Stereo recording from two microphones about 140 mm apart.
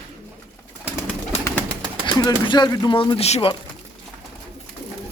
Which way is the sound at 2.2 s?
30° left (ahead or behind).